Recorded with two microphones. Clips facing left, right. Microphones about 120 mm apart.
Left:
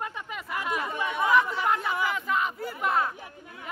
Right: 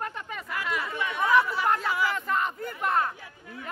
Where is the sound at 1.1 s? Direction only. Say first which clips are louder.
Even; 10° left (ahead or behind).